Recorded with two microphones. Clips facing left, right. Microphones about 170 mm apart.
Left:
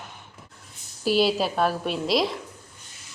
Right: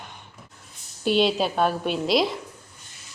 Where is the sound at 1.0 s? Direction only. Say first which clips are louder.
Right 1 dB; 5° left (ahead or behind).